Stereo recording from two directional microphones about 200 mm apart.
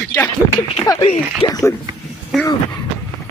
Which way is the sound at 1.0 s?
25° left (ahead or behind).